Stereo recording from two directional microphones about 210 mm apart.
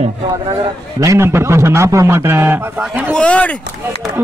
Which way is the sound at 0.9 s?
15° right (ahead or behind).